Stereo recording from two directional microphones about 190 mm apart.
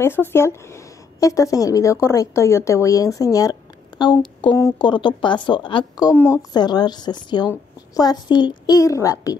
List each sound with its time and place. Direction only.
0.0 s a woman's voice: 10° left (ahead or behind)
3.9 s a sound: 25° left (ahead or behind)
4.4 s a woman's voice: 20° left (ahead or behind)